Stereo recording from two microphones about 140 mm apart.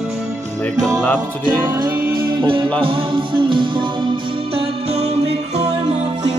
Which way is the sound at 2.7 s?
40° right (ahead or behind).